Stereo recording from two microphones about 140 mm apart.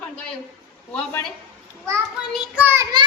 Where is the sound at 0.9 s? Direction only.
10° left (ahead or behind).